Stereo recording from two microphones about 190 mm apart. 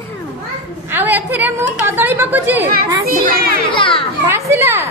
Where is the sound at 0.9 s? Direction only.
10° right (ahead or behind).